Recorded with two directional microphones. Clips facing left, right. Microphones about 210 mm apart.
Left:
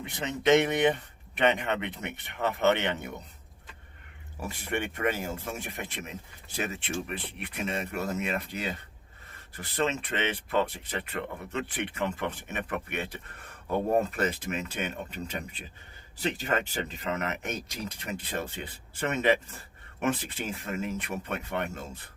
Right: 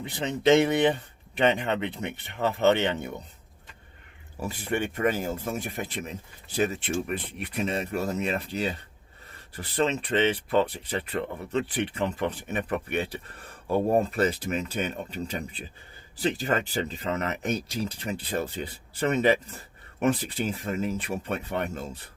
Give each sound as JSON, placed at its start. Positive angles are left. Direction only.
{"t": 0.0, "sound": "speech", "side_deg": -30}
{"t": 4.4, "sound": "speech", "side_deg": -30}